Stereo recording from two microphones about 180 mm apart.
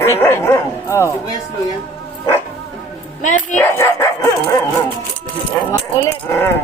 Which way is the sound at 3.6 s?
15° left (ahead or behind).